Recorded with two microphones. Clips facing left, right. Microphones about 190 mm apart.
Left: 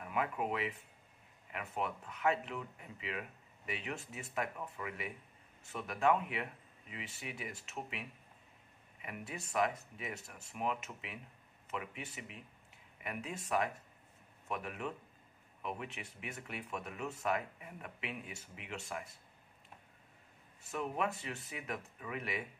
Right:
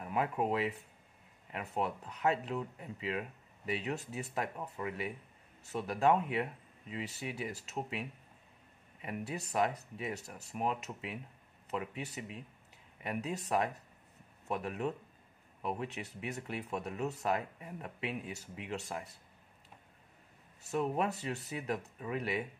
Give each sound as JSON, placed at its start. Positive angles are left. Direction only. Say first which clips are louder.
{"t": 0.0, "sound": "speech", "louder": "right 3 dB", "side_deg": -35}
{"t": 20.7, "sound": "speech", "louder": "right 4 dB", "side_deg": -35}